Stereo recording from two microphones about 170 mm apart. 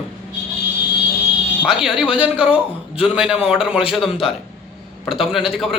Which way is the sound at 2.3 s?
10° right (ahead or behind).